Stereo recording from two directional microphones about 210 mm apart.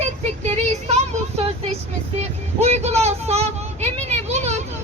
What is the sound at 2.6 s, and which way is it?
Speech, 30° right (ahead or behind).